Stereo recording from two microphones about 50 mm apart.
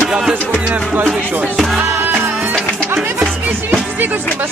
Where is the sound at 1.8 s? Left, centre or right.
Right.